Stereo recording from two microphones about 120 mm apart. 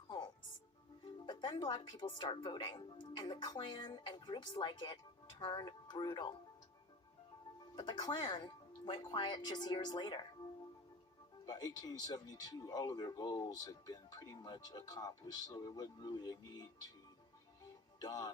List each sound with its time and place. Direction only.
1.2 s speech: 40° left (ahead or behind)
7.8 s speech: 35° left (ahead or behind)
11.4 s speech: 35° left (ahead or behind)
18.0 s speech: 35° left (ahead or behind)